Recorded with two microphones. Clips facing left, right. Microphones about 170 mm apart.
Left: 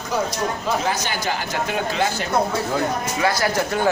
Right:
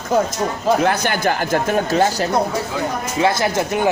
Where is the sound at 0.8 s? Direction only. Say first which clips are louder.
Right 6 dB; 55° right (ahead or behind).